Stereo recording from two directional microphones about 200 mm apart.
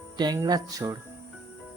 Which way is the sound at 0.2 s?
20° right (ahead or behind).